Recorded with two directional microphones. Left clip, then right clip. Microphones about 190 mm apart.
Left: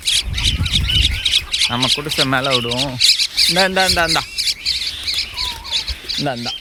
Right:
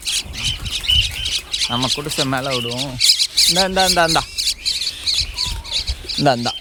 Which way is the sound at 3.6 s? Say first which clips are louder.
Left 1 dB; 10° right (ahead or behind).